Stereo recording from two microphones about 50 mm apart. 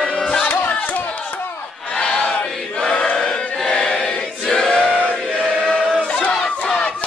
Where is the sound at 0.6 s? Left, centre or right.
Left.